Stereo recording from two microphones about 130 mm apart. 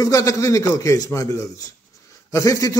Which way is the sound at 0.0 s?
25° left (ahead or behind).